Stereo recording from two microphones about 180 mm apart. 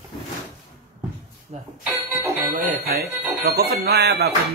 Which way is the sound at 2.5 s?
55° right (ahead or behind).